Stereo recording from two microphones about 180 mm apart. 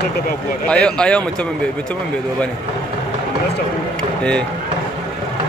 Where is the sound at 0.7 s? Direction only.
5° left (ahead or behind).